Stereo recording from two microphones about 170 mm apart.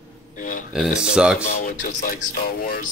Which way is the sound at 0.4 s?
50° left (ahead or behind).